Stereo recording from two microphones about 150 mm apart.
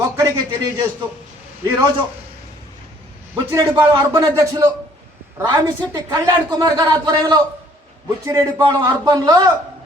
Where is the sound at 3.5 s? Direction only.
25° right (ahead or behind).